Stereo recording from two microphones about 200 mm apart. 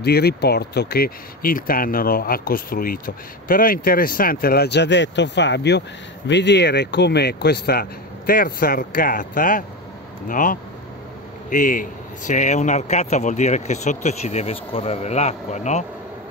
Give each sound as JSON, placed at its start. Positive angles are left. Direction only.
{"t": 0.0, "sound": "speech", "side_deg": 55}